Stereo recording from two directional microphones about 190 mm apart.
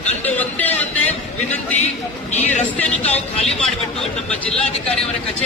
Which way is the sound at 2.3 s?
35° left (ahead or behind).